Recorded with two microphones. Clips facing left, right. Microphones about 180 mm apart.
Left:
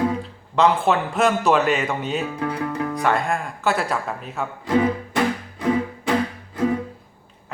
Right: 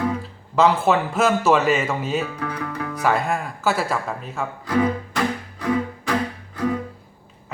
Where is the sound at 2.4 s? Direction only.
25° left (ahead or behind).